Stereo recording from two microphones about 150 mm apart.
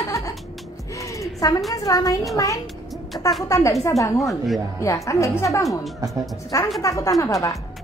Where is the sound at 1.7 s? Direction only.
25° left (ahead or behind).